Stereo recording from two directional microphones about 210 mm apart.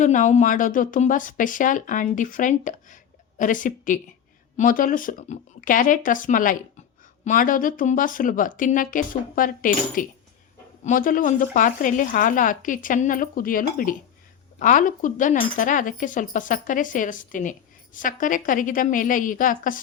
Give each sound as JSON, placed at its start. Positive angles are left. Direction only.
{"t": 0.0, "sound": "speech", "side_deg": 35}